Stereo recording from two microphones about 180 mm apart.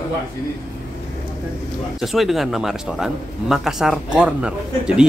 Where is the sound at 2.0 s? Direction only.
Centre (ahead or behind).